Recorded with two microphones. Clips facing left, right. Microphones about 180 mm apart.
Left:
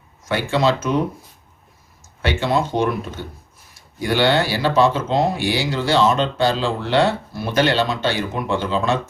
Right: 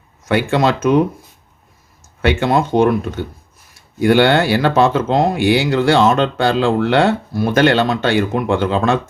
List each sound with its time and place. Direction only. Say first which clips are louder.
0.3 s speech: right 3 dB; 55° right (ahead or behind)
2.2 s speech: right 5 dB; 55° right (ahead or behind)